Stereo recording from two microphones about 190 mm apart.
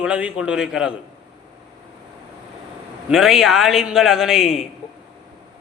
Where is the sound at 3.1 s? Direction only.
Centre (ahead or behind).